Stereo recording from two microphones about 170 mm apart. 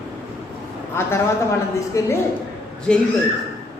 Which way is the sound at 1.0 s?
15° left (ahead or behind).